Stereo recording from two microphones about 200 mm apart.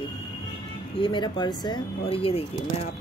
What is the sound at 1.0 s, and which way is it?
Speech, 25° left (ahead or behind).